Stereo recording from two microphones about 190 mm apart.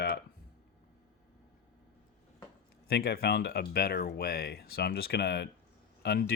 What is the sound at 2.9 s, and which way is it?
Speech, 55° left (ahead or behind).